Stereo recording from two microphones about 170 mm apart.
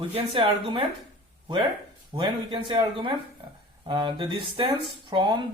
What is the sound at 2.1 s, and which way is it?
Speech, 30° right (ahead or behind).